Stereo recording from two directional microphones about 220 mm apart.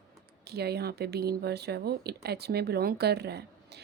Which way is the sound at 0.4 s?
45° right (ahead or behind).